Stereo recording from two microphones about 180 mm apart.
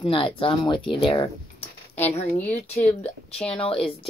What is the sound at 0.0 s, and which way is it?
Speech, 30° left (ahead or behind).